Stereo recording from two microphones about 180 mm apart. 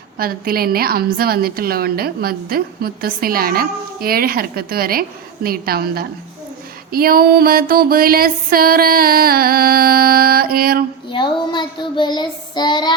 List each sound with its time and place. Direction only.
0.2 s a woman's voice: 55° right (ahead or behind)
11.1 s child singing: 25° left (ahead or behind)